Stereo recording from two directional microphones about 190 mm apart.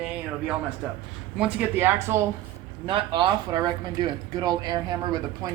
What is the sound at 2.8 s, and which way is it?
Speech, 25° right (ahead or behind).